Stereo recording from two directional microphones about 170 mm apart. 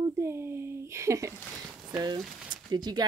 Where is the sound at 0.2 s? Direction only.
15° right (ahead or behind).